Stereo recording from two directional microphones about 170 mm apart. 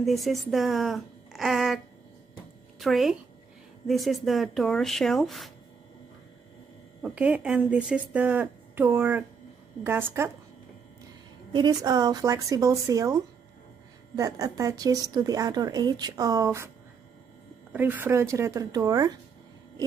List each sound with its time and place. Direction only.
0.0 s speech: centre (ahead or behind)
2.8 s speech: centre (ahead or behind)
7.0 s speech: 10° right (ahead or behind)
11.5 s speech: 25° right (ahead or behind)
17.7 s speech: 10° right (ahead or behind)